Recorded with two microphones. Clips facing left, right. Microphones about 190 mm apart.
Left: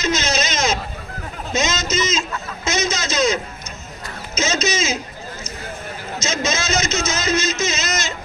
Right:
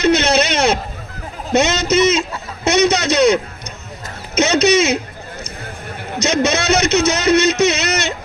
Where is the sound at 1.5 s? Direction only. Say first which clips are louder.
Right 8 dB; 60° right (ahead or behind).